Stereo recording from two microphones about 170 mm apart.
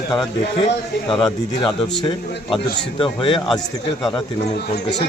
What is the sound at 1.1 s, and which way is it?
Speech, 30° left (ahead or behind).